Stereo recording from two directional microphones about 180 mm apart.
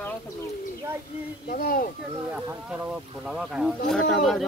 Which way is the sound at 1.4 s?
55° left (ahead or behind).